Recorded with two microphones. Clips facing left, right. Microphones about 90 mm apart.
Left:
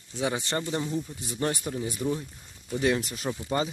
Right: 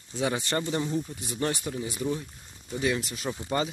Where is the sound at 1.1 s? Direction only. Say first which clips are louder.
Even; 30° left (ahead or behind).